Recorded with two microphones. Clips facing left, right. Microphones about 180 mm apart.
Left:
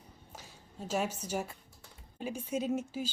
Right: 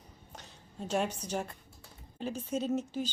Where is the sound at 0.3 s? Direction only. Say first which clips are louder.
Right 2 dB; 5° left (ahead or behind).